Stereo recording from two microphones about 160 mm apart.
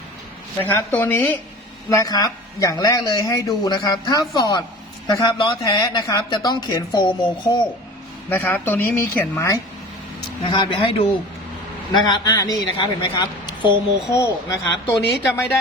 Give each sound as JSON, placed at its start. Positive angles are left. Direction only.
{"t": 0.6, "sound": "speech", "side_deg": 15}
{"t": 1.9, "sound": "speech", "side_deg": 20}
{"t": 8.3, "sound": "speech", "side_deg": 10}
{"t": 10.4, "sound": "speech", "side_deg": 30}